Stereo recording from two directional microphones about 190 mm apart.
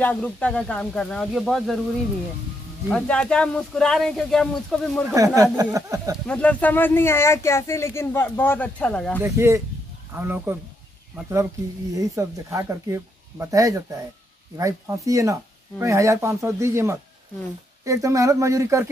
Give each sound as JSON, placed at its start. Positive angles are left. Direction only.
{"t": 0.0, "sound": "speech", "side_deg": 10}
{"t": 2.9, "sound": "speech", "side_deg": 5}
{"t": 5.1, "sound": "speech", "side_deg": -15}
{"t": 6.2, "sound": "speech", "side_deg": 5}
{"t": 9.2, "sound": "speech", "side_deg": -15}